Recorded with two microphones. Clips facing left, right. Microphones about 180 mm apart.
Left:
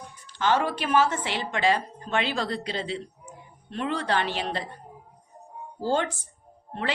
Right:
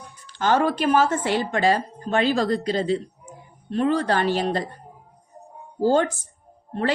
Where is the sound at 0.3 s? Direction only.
45° right (ahead or behind).